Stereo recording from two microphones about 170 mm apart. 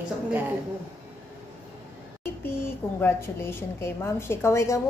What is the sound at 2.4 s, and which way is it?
A woman's voice, 15° left (ahead or behind).